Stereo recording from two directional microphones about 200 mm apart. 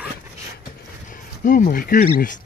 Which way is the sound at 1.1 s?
40° left (ahead or behind).